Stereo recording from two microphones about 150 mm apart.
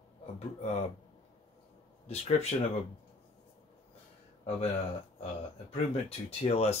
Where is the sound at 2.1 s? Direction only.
45° left (ahead or behind).